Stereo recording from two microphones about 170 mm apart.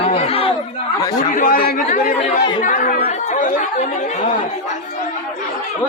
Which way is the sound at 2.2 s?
30° left (ahead or behind).